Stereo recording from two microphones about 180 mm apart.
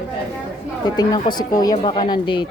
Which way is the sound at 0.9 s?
20° left (ahead or behind).